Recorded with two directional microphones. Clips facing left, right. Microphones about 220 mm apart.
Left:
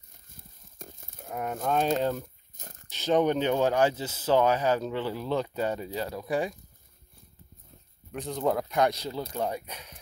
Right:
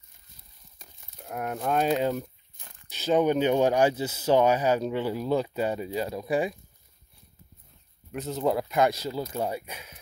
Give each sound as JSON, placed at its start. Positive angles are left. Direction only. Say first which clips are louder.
{"t": 0.3, "sound": "a sound", "louder": "left 6 dB", "side_deg": 50}
{"t": 1.3, "sound": "speech", "louder": "right 1 dB", "side_deg": -5}
{"t": 2.5, "sound": "crumpling", "louder": "left 6 dB", "side_deg": 45}
{"t": 2.9, "sound": "speech", "louder": "right 1 dB", "side_deg": -10}
{"t": 8.1, "sound": "speech", "louder": "right 1 dB", "side_deg": -5}